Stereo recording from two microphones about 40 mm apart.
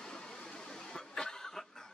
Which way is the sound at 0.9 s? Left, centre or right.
Centre.